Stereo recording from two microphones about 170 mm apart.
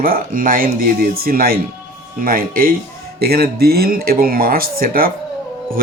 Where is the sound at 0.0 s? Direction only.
55° right (ahead or behind).